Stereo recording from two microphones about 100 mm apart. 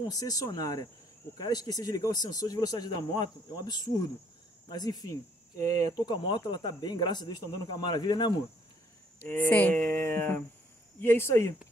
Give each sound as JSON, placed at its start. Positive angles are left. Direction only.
{"t": 0.0, "sound": "speech", "side_deg": 35}
{"t": 6.0, "sound": "speech", "side_deg": 50}
{"t": 9.2, "sound": "speech", "side_deg": 15}